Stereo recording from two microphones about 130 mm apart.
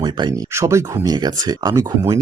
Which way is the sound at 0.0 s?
35° right (ahead or behind).